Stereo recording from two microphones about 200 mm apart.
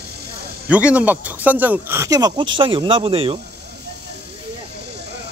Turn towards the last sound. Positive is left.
turn(degrees=-25)  # may be behind; listen again after turning